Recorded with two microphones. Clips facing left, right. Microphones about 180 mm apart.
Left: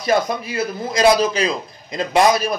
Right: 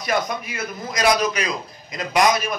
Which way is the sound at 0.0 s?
30° left (ahead or behind).